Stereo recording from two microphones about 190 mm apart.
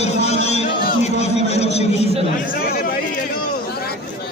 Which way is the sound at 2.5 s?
50° left (ahead or behind).